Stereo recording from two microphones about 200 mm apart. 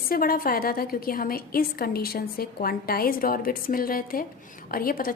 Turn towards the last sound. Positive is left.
turn(degrees=45)  # may be behind; listen again after turning